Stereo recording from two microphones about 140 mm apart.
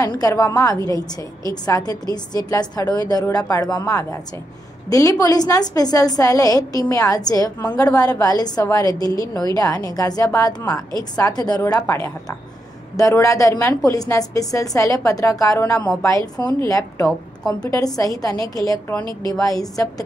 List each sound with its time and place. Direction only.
0.0 s a woman's voice: 25° left (ahead or behind)